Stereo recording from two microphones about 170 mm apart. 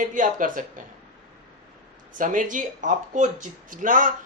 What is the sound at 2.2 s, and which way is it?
Speech, 50° right (ahead or behind).